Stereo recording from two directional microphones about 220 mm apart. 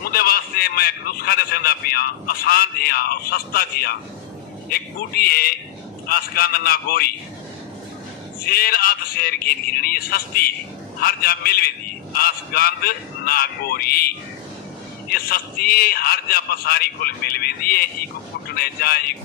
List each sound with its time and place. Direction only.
0.0 s a man's voice: 45° left (ahead or behind)
8.5 s a man's voice: 45° left (ahead or behind)